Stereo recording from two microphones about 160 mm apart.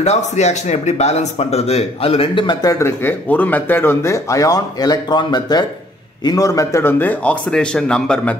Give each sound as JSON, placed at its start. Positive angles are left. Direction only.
{"t": 0.0, "sound": "speech", "side_deg": 45}